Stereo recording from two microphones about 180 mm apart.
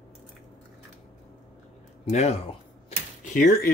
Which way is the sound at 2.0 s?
35° left (ahead or behind).